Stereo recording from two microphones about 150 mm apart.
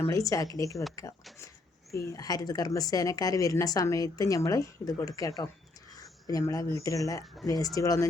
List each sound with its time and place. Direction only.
0.1 s speech: 20° left (ahead or behind)